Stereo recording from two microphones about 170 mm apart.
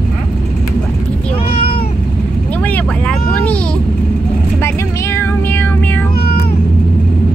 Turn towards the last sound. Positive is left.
turn(degrees=65)  # may be behind; listen again after turning